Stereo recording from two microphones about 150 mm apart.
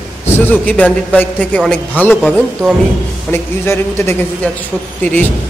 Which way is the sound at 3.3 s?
15° left (ahead or behind).